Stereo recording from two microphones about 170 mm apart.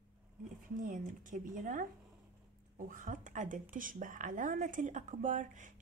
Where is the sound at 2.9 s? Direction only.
50° right (ahead or behind).